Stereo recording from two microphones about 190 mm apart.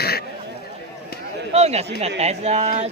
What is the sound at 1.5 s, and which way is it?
Speech, 35° right (ahead or behind).